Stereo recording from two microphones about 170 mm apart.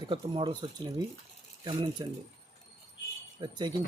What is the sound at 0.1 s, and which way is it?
Speech, 30° right (ahead or behind).